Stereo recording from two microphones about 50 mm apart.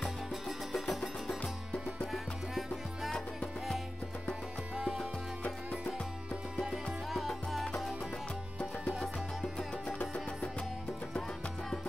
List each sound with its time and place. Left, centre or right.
0.0 s music: centre
4.7 s music: centre
6.6 s music: centre
9.8 s music: left